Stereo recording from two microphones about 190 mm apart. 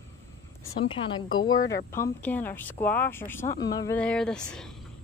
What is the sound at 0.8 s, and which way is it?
Speech, 25° left (ahead or behind).